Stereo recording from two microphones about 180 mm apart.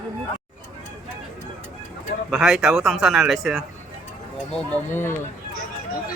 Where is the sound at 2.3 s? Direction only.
Centre (ahead or behind).